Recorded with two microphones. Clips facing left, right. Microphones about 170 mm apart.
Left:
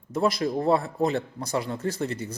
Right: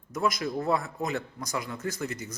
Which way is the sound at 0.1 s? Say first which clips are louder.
Left 4 dB; 30° left (ahead or behind).